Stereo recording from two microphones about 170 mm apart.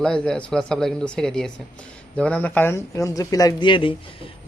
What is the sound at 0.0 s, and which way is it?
Speech, 5° left (ahead or behind).